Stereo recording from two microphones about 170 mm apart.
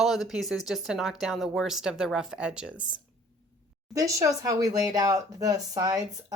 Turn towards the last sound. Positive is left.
turn(degrees=-20)  # may be behind; listen again after turning